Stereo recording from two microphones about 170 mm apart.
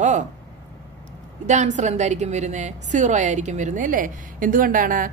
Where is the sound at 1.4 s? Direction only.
45° right (ahead or behind).